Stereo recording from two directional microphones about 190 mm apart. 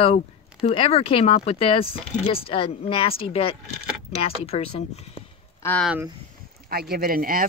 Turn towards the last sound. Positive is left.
turn(degrees=-50)  # may be behind; listen again after turning